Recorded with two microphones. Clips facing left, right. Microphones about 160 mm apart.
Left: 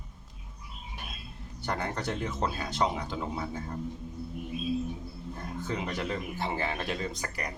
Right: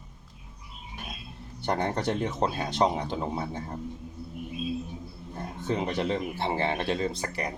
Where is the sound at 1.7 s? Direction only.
30° right (ahead or behind).